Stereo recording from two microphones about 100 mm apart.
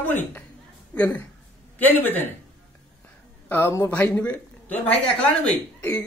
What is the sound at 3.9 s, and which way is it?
Speech, 15° left (ahead or behind).